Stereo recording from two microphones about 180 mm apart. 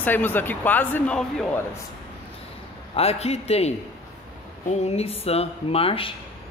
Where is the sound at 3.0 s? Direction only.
35° left (ahead or behind).